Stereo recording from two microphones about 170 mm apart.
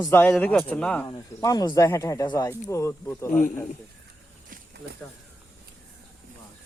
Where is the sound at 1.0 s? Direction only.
20° left (ahead or behind).